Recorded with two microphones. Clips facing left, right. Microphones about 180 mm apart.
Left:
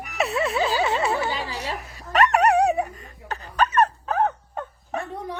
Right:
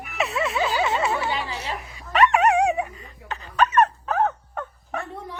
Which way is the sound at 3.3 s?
35° left (ahead or behind).